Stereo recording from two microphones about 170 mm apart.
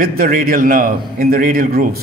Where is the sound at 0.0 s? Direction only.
55° right (ahead or behind).